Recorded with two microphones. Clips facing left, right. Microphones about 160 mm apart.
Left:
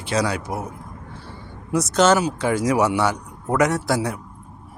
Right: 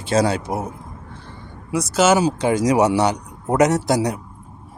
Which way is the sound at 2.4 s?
20° right (ahead or behind).